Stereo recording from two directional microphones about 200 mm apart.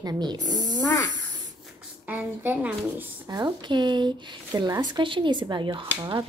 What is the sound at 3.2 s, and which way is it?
A woman's voice, 20° right (ahead or behind).